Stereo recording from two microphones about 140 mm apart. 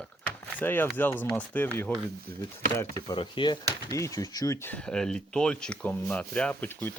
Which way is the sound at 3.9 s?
25° left (ahead or behind).